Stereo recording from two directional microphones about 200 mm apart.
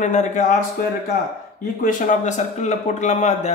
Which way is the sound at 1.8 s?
35° left (ahead or behind).